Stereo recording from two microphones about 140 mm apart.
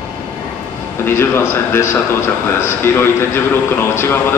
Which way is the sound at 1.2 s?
20° left (ahead or behind).